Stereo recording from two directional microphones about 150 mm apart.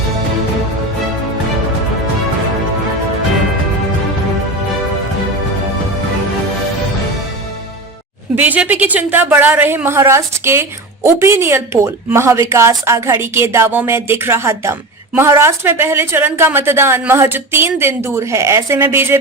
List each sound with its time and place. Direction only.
8.4 s a woman's voice: 10° right (ahead or behind)